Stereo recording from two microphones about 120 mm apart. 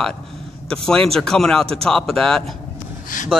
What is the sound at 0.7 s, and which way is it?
Speech, 5° left (ahead or behind).